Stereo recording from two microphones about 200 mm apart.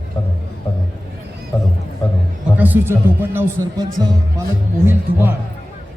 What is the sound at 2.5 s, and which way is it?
A man's voice, 10° right (ahead or behind).